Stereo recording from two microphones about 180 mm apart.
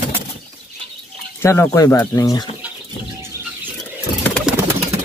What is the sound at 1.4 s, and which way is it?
Speech, 15° left (ahead or behind).